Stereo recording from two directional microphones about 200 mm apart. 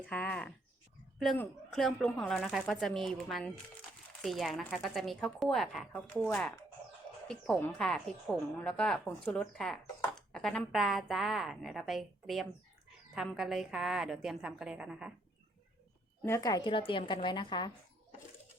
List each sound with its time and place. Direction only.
0.0 s speech: 5° left (ahead or behind)
16.2 s speech: 15° left (ahead or behind)